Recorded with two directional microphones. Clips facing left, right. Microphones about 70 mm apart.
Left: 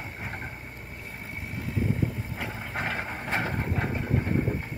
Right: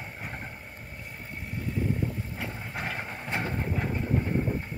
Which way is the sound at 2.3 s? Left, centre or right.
Centre.